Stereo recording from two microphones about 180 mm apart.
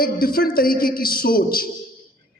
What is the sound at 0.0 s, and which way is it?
A man's voice, 55° left (ahead or behind).